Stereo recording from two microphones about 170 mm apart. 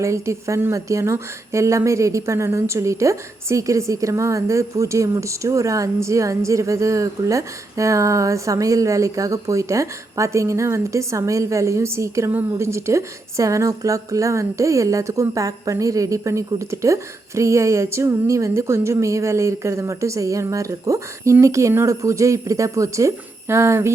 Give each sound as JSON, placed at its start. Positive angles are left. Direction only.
{"t": 0.0, "sound": "a woman's voice", "side_deg": -15}